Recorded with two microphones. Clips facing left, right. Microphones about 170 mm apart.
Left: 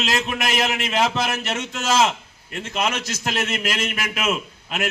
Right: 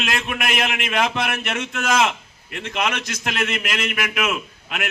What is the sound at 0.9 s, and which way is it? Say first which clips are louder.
A man's voice: right 1 dB; 25° left (ahead or behind).